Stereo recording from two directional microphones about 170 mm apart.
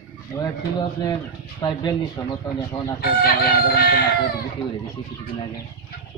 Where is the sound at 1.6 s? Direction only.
25° left (ahead or behind).